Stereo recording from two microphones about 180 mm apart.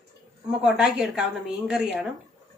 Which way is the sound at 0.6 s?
5° right (ahead or behind).